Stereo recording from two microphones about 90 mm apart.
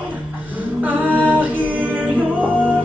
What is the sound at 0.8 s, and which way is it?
Music, 15° right (ahead or behind).